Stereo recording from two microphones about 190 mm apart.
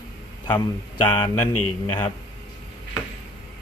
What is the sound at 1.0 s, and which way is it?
Speech, 25° left (ahead or behind).